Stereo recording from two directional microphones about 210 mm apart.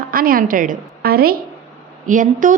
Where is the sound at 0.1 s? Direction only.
45° right (ahead or behind).